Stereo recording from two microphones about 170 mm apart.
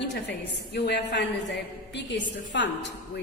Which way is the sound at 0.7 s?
75° left (ahead or behind).